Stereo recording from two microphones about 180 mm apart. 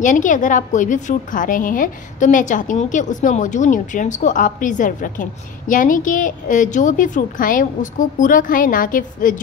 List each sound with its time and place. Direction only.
0.0 s a woman's voice: 45° left (ahead or behind)